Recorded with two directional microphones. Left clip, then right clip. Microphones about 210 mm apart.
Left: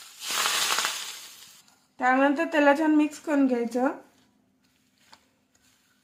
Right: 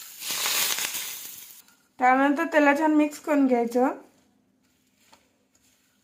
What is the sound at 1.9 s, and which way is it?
A woman's voice, 20° right (ahead or behind).